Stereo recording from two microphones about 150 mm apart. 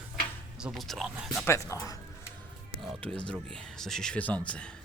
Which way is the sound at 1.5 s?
20° left (ahead or behind).